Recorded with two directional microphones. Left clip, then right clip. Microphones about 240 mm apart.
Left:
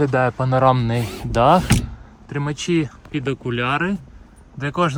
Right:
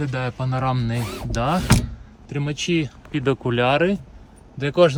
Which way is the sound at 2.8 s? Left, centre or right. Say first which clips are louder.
Left 1 dB; centre.